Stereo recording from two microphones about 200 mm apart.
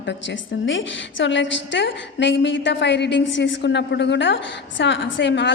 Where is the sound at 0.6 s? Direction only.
65° left (ahead or behind).